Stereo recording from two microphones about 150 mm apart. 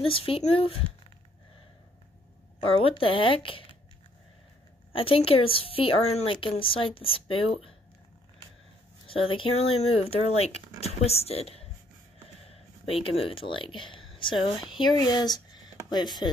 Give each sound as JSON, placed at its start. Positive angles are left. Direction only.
{"t": 0.0, "sound": "speech", "side_deg": 35}
{"t": 2.6, "sound": "speech", "side_deg": 35}
{"t": 4.9, "sound": "speech", "side_deg": 35}
{"t": 9.0, "sound": "a woman's voice", "side_deg": 35}